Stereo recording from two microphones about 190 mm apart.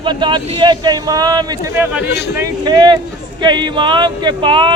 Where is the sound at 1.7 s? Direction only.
10° right (ahead or behind).